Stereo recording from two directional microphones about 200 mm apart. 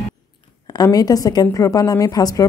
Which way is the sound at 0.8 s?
20° left (ahead or behind).